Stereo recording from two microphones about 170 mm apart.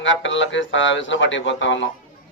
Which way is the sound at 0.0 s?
90° left.